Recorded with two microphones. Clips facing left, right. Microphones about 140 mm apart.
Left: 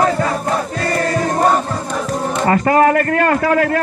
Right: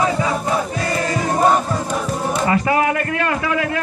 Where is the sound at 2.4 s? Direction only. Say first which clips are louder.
Left 6 dB; 45° left (ahead or behind).